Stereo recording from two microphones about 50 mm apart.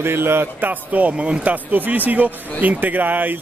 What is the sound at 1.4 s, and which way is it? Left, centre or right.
A man's voice, right.